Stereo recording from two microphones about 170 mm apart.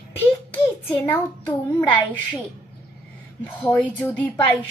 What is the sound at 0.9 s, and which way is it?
Speech, 10° left (ahead or behind).